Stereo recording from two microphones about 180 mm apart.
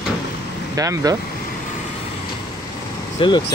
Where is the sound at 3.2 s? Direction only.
30° left (ahead or behind).